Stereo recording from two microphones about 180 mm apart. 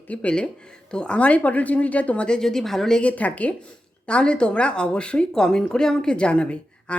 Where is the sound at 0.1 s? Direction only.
5° left (ahead or behind).